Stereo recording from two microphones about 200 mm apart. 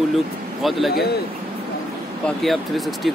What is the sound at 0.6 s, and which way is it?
Speech, centre (ahead or behind).